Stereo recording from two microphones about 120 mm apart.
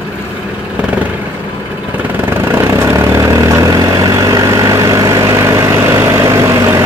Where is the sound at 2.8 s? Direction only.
25° right (ahead or behind).